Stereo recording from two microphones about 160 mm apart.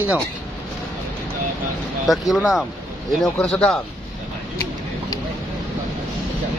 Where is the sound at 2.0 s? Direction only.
Centre (ahead or behind).